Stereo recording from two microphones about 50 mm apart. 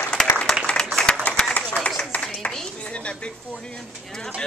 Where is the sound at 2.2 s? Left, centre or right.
Centre.